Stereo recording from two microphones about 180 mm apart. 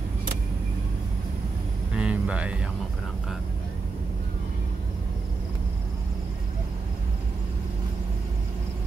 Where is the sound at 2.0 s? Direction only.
5° right (ahead or behind).